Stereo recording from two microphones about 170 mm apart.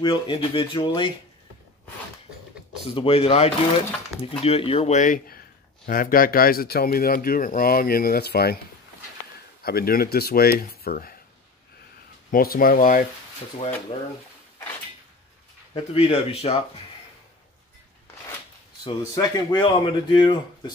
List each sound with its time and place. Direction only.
0.0 s speech: 30° left (ahead or behind)
2.8 s speech: 35° left (ahead or behind); by 8.5 s 70° left (ahead or behind)
9.6 s speech: 65° left (ahead or behind)
12.3 s speech: 60° left (ahead or behind)
15.7 s speech: 35° left (ahead or behind)
18.9 s speech: 25° left (ahead or behind)